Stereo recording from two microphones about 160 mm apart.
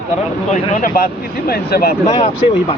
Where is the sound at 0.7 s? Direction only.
60° left (ahead or behind).